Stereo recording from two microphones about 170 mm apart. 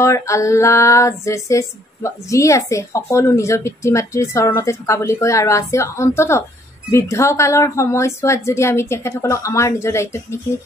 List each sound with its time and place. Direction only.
0.0 s female singing: 15° left (ahead or behind)